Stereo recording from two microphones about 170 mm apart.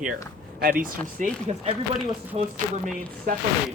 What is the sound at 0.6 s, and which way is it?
Speech, 55° right (ahead or behind).